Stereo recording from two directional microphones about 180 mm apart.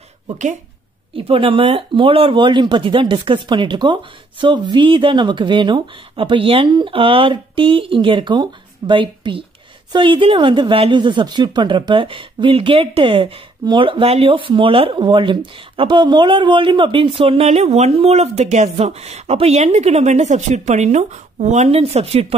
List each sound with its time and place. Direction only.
1.1 s speech: 30° right (ahead or behind)